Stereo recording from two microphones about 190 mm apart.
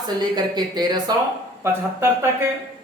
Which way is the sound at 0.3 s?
20° right (ahead or behind).